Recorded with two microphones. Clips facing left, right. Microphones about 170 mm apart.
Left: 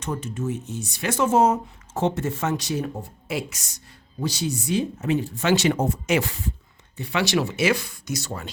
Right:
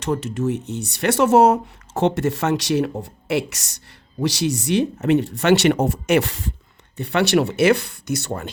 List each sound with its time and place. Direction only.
0.0 s speech: 70° right (ahead or behind)
6.9 s speech: 60° right (ahead or behind)